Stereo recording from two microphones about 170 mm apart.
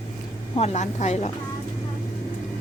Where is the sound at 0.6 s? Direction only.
40° left (ahead or behind).